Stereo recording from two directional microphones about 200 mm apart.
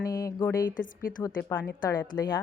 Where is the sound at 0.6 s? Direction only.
45° left (ahead or behind).